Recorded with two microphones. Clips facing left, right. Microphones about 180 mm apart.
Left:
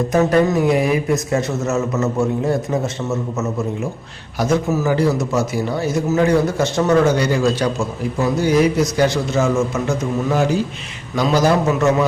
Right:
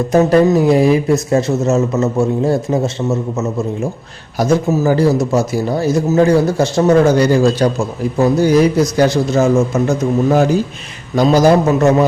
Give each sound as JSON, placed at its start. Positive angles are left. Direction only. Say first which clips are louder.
{"t": 0.1, "sound": "a man's voice", "louder": "right 6 dB", "side_deg": -35}
{"t": 4.4, "sound": "a man's voice", "louder": "right 4 dB", "side_deg": -30}
{"t": 11.1, "sound": "a man's voice", "louder": "right 6 dB", "side_deg": -40}